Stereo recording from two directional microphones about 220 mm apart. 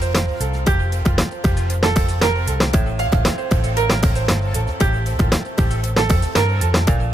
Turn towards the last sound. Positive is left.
turn(degrees=0)  # may be behind; listen again after turning